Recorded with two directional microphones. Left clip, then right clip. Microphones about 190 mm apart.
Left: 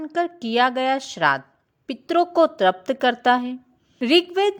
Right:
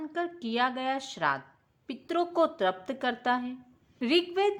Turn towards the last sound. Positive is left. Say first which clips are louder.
# left 8 dB
turn(degrees=35)  # may be behind; listen again after turning